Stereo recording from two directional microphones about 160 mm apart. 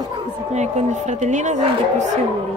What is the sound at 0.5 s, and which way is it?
Speech, 45° right (ahead or behind).